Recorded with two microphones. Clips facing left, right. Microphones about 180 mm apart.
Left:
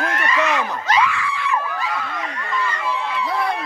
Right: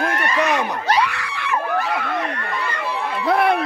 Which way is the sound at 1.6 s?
60° right (ahead or behind).